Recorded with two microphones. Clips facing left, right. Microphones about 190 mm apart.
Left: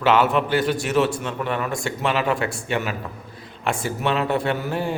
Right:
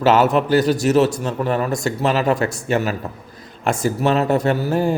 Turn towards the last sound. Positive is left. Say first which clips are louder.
# right 6 dB
turn(degrees=-40)  # may be behind; listen again after turning